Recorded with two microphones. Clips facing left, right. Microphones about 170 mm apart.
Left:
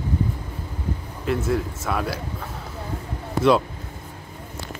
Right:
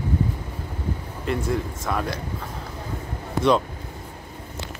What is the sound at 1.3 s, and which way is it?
Speech, 5° left (ahead or behind).